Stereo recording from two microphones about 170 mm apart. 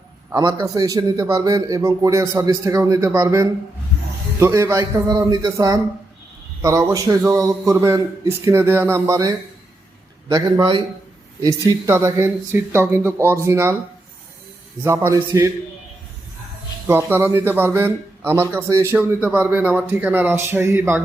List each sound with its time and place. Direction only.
0.3 s a man's voice: 25° right (ahead or behind)
14.8 s a man's voice: 15° right (ahead or behind)
16.8 s a man's voice: 15° right (ahead or behind)